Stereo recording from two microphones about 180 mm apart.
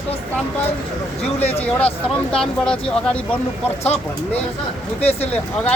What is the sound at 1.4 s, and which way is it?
Speech, 35° left (ahead or behind).